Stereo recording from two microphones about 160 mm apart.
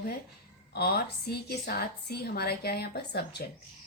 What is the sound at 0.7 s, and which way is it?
Speech, 80° left.